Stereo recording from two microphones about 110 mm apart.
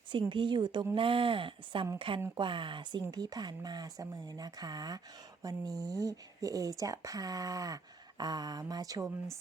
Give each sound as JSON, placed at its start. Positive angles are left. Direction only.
{"t": 0.1, "sound": "speech", "side_deg": -50}
{"t": 0.9, "sound": "speech", "side_deg": -55}